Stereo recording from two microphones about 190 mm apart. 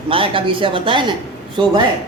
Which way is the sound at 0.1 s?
30° right (ahead or behind).